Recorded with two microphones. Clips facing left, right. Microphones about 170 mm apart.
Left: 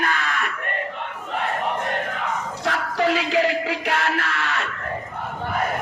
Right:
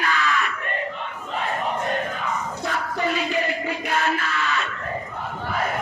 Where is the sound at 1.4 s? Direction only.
70° left (ahead or behind).